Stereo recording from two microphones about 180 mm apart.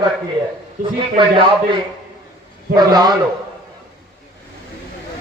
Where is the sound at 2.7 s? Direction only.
20° right (ahead or behind).